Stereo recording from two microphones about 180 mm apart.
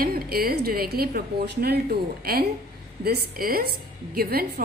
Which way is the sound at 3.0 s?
55° right (ahead or behind).